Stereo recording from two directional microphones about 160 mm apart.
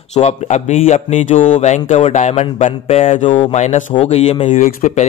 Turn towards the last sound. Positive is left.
turn(degrees=50)  # may be behind; listen again after turning